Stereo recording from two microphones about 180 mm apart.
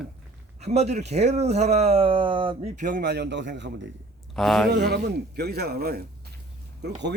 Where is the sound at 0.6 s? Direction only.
40° right (ahead or behind).